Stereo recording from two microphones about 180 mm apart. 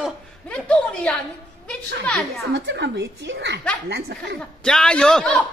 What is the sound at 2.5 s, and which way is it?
Chuckle, 80° right.